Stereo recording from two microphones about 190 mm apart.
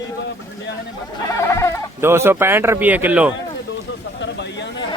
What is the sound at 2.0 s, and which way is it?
Speech, 10° right (ahead or behind).